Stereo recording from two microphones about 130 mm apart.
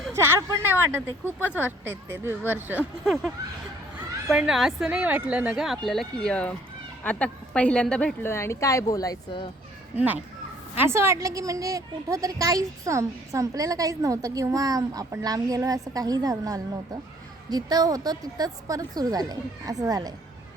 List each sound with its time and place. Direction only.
0.1 s speech: 20° right (ahead or behind)
3.0 s a woman's voice: centre (ahead or behind)
8.3 s speech: 20° left (ahead or behind)
9.9 s a woman's voice: 10° right (ahead or behind); by 20.1 s 30° right (ahead or behind)